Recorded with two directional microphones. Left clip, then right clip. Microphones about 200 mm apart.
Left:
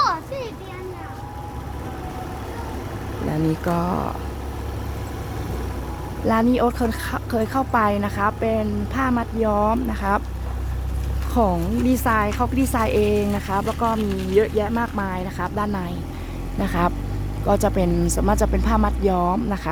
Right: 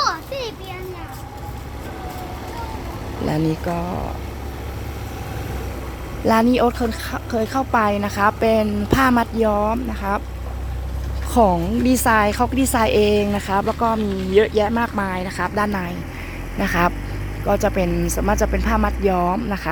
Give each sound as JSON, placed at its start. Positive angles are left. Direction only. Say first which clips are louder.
{"t": 3.7, "sound": "speech", "louder": "left 2 dB", "side_deg": 10}
{"t": 6.2, "sound": "speech", "louder": "right 3 dB", "side_deg": -10}
{"t": 9.5, "sound": "speech", "louder": "even", "side_deg": 0}
{"t": 11.3, "sound": "speech", "louder": "right 5 dB", "side_deg": -10}